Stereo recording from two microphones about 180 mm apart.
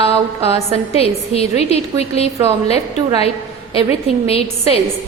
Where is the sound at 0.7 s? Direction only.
35° left (ahead or behind).